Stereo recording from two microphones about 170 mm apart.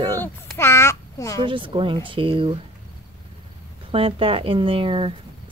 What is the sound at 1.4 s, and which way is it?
Speech, 30° right (ahead or behind).